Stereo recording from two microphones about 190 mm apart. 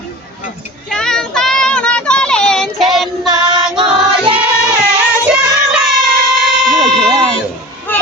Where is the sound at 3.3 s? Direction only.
25° right (ahead or behind).